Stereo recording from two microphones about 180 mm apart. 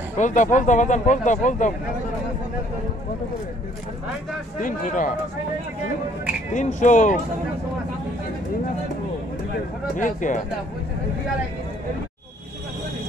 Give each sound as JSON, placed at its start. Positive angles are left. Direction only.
{"t": 0.2, "sound": "speech", "side_deg": 45}
{"t": 4.6, "sound": "speech", "side_deg": 45}
{"t": 6.5, "sound": "speech", "side_deg": 45}
{"t": 9.9, "sound": "speech", "side_deg": 45}